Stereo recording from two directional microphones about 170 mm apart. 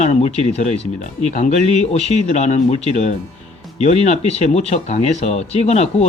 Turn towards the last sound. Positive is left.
turn(degrees=40)  # may be behind; listen again after turning